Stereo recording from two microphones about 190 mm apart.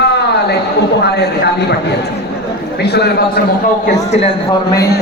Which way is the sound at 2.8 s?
60° left (ahead or behind).